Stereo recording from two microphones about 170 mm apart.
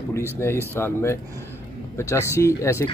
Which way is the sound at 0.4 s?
15° left (ahead or behind).